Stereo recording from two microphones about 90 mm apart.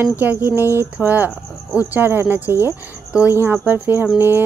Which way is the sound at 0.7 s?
20° right (ahead or behind).